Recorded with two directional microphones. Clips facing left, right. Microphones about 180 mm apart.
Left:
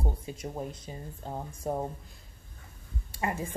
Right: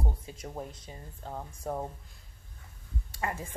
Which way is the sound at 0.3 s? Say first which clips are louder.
Left 4 dB; 20° left (ahead or behind).